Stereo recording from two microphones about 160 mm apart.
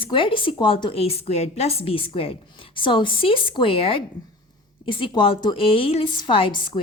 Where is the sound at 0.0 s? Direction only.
30° left (ahead or behind).